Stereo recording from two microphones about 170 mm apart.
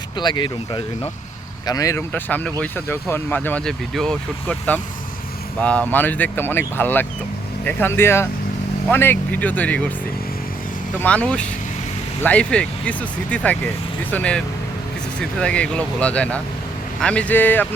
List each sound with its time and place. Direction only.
0.2 s speech: 25° left (ahead or behind); by 9.8 s 10° left (ahead or behind)
11.0 s speech: 10° left (ahead or behind)